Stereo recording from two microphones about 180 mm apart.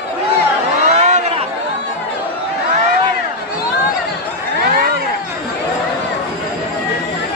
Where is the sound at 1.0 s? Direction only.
40° right (ahead or behind).